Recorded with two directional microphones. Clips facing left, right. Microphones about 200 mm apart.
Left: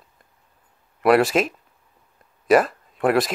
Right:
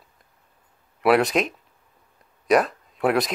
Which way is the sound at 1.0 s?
Centre (ahead or behind).